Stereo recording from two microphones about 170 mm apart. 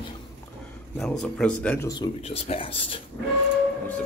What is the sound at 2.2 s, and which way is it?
Speech, 35° left (ahead or behind).